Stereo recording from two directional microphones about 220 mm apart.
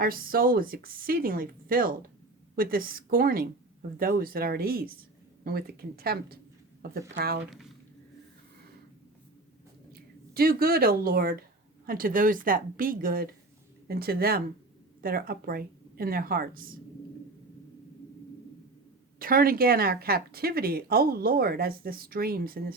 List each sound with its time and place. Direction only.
0.0 s speech: 40° right (ahead or behind)
9.9 s speech: 45° right (ahead or behind)
19.2 s speech: 40° right (ahead or behind)